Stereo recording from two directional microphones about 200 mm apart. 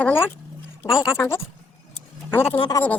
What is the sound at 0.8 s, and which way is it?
Speech, centre (ahead or behind).